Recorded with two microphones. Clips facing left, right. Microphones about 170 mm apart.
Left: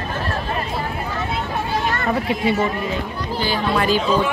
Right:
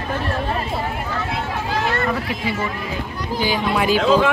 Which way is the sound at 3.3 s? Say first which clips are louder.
Right 1 dB; 10° right (ahead or behind).